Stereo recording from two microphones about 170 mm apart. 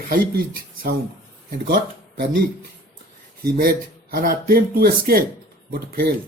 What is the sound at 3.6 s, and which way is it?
Speech, 60° right (ahead or behind).